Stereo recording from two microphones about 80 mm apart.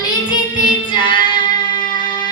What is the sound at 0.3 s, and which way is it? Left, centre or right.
Music, left.